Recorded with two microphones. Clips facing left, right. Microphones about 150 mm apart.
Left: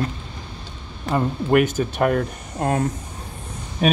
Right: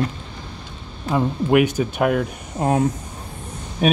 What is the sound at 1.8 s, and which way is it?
Speech, 5° right (ahead or behind).